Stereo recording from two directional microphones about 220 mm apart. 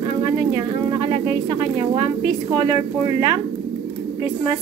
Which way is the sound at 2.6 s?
20° right (ahead or behind).